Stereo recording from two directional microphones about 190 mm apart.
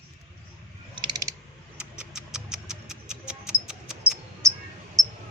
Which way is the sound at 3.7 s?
5° right (ahead or behind).